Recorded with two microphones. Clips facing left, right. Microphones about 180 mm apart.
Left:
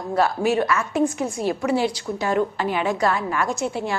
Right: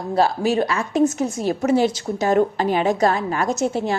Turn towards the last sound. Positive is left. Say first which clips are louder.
# right 4 dB
turn(degrees=-40)  # may be behind; listen again after turning